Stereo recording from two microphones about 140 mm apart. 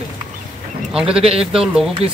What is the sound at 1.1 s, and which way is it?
Speech, 45° right (ahead or behind).